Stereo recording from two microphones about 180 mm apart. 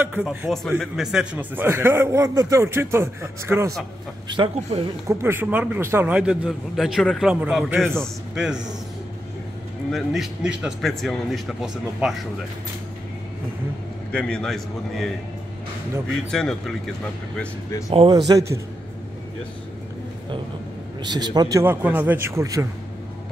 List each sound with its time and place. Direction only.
0.0 s speech: 5° right (ahead or behind)
4.3 s speech: 30° right (ahead or behind)
5.0 s a man's voice: 10° right (ahead or behind)
9.8 s a man's voice: centre (ahead or behind)
14.1 s a man's voice: 5° left (ahead or behind)
16.1 s a man's voice: 5° left (ahead or behind)
17.8 s speech: 25° right (ahead or behind)
21.0 s speech: 25° right (ahead or behind)